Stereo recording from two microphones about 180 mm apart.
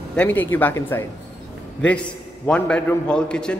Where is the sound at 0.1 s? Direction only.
10° left (ahead or behind).